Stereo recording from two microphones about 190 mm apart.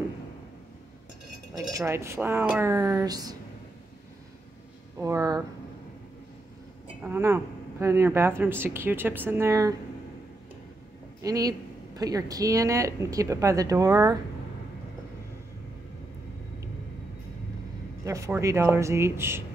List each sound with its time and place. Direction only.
1.7 s speech: 15° right (ahead or behind)
4.9 s speech: 15° right (ahead or behind)
7.0 s speech: 10° right (ahead or behind)
11.1 s speech: 20° right (ahead or behind)
18.0 s speech: 15° right (ahead or behind)